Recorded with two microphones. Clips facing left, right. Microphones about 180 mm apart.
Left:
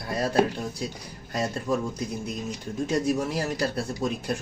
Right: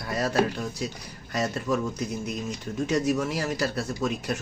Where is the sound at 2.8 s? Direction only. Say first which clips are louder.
Even; 35° left (ahead or behind).